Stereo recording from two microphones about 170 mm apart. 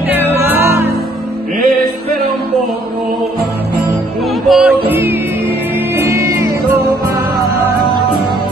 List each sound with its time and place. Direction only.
0.1 s music: 15° right (ahead or behind)
4.5 s music: 5° right (ahead or behind)